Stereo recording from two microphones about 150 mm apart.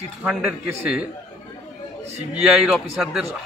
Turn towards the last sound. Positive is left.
turn(degrees=-5)  # may be behind; listen again after turning